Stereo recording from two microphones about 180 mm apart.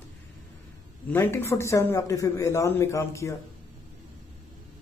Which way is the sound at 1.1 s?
10° left (ahead or behind).